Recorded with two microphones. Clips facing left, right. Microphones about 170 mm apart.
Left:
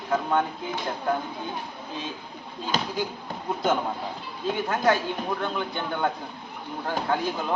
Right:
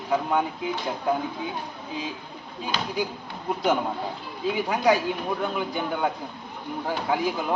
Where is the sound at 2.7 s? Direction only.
45° left (ahead or behind).